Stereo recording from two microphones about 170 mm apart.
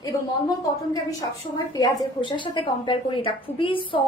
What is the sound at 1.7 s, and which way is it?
A woman's voice, 25° left (ahead or behind).